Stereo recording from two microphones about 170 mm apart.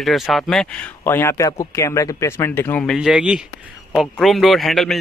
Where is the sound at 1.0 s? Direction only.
15° left (ahead or behind).